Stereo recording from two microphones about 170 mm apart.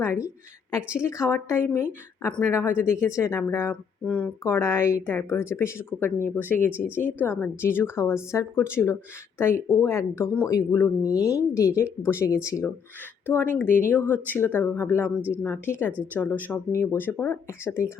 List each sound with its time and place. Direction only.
0.0 s speech: 15° left (ahead or behind)
6.7 s a woman's voice: 10° right (ahead or behind)
7.2 s speech: 10° left (ahead or behind)